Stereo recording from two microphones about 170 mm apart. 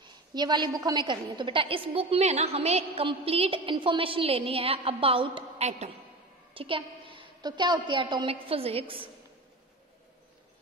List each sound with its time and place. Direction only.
0.0 s a woman's voice: 25° right (ahead or behind)